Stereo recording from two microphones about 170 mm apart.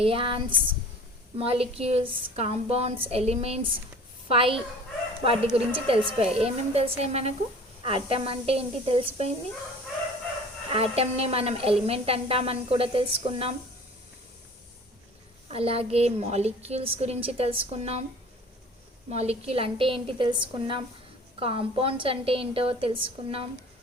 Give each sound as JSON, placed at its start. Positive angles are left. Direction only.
{"t": 0.0, "sound": "speech", "side_deg": -30}
{"t": 10.7, "sound": "speech", "side_deg": -35}
{"t": 15.4, "sound": "speech", "side_deg": -35}
{"t": 19.1, "sound": "speech", "side_deg": -40}